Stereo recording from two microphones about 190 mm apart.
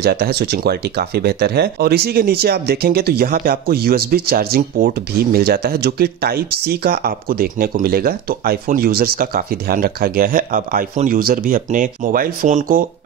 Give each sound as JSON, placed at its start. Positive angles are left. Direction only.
{"t": 0.0, "sound": "speech", "side_deg": -55}